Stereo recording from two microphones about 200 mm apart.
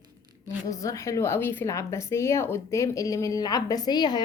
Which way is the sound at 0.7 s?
15° left (ahead or behind).